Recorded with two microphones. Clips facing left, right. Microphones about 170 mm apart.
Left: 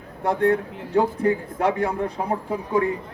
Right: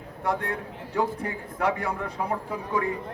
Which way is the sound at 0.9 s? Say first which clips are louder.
Left 8 dB; 25° left (ahead or behind).